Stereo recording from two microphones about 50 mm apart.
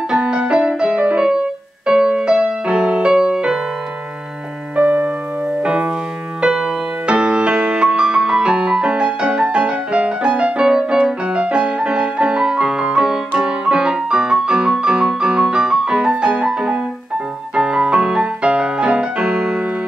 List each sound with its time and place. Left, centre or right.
0.1 s music: right
4.7 s music: right
6.4 s music: centre